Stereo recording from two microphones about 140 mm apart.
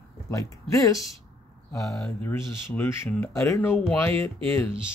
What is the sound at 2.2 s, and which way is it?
Speech, 15° left (ahead or behind).